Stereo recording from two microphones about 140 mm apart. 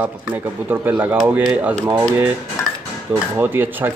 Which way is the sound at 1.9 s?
30° right (ahead or behind).